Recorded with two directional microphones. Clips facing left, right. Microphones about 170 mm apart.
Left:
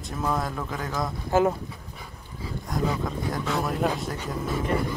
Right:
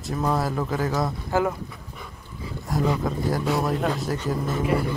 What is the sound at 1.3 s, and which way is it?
Speech, 20° left (ahead or behind).